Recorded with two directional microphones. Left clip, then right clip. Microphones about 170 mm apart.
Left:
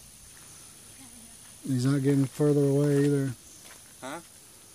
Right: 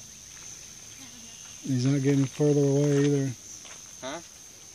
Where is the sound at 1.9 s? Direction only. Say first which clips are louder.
Even; 10° left (ahead or behind).